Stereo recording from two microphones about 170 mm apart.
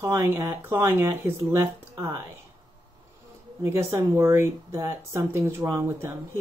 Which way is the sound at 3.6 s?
15° right (ahead or behind).